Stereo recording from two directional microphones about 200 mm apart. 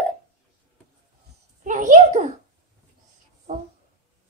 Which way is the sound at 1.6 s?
40° right (ahead or behind).